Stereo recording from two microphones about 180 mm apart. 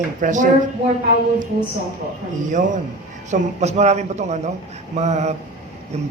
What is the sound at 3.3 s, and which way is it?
A man's voice, 40° right (ahead or behind).